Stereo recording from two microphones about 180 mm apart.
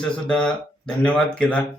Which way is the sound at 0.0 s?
5° left (ahead or behind).